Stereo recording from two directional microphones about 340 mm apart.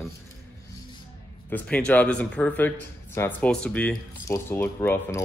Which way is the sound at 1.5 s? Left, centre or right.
Centre.